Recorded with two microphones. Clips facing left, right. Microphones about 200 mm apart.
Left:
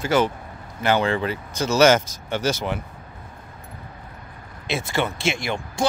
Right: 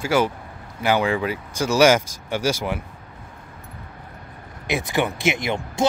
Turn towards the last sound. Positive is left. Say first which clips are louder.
# right 2 dB
turn(degrees=-20)  # may be behind; listen again after turning